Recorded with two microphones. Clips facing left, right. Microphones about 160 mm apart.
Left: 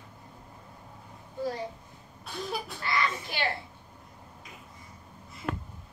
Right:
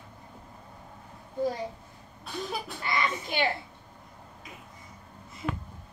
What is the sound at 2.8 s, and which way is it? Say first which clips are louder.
Speech: right 1 dB; 20° right (ahead or behind).